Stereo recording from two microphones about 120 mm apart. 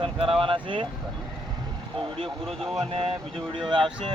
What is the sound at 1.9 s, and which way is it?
Speech, 50° right (ahead or behind).